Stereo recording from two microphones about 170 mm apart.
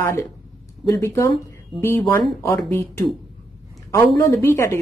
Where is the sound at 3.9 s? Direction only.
15° left (ahead or behind).